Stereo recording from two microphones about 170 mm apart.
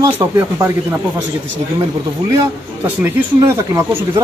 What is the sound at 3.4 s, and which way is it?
Speech, 15° right (ahead or behind).